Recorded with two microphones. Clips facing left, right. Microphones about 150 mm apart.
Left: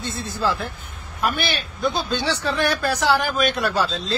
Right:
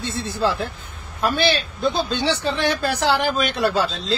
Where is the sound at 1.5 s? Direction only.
25° right (ahead or behind).